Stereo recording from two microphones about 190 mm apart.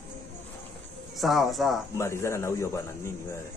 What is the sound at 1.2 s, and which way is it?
Speech, centre (ahead or behind).